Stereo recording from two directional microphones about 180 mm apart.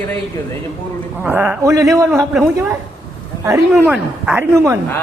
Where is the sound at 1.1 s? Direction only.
10° right (ahead or behind).